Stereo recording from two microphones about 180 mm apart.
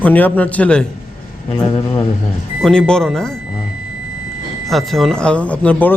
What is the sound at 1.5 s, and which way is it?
Speech, 25° left (ahead or behind).